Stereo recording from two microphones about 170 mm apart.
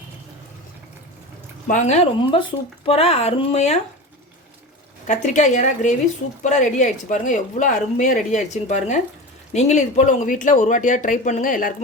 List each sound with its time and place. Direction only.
1.6 s speech: 45° left (ahead or behind)
5.0 s speech: 45° left (ahead or behind)